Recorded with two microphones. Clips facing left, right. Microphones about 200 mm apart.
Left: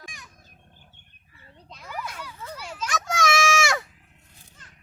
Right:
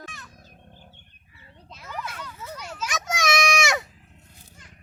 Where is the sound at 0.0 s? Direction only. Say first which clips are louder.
Right 4 dB; 15° left (ahead or behind).